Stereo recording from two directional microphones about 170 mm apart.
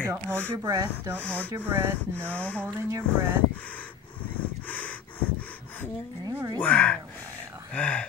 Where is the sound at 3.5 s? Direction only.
10° left (ahead or behind).